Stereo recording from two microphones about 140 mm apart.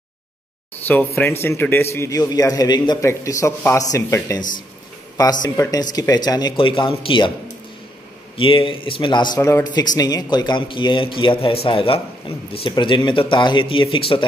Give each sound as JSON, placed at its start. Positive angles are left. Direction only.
{"t": 0.8, "sound": "speech", "side_deg": 10}
{"t": 5.6, "sound": "speech", "side_deg": 25}
{"t": 8.4, "sound": "speech", "side_deg": 40}